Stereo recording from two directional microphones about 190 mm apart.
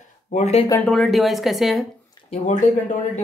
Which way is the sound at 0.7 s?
5° left (ahead or behind).